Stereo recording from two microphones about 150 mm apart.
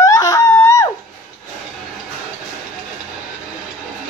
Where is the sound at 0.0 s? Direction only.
25° left (ahead or behind).